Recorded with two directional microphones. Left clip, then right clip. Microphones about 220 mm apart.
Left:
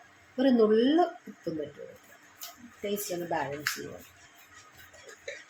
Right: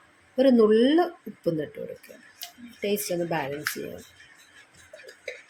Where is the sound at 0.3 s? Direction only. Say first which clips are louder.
Right 5 dB; 35° right (ahead or behind).